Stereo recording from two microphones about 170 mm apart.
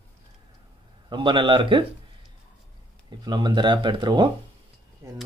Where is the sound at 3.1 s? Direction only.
25° right (ahead or behind).